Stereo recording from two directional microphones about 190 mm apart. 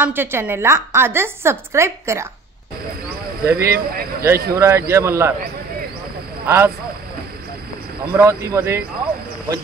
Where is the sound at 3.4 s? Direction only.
15° right (ahead or behind).